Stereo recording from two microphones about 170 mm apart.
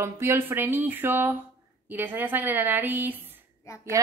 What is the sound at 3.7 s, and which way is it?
Speech, 15° left (ahead or behind).